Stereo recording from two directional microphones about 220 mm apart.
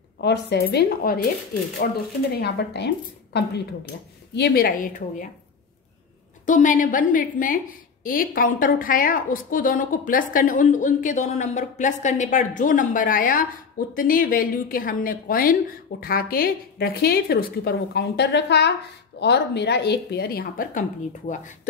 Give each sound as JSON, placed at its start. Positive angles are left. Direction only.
{"t": 0.2, "sound": "a woman's voice", "side_deg": 50}
{"t": 6.4, "sound": "a woman's voice", "side_deg": 35}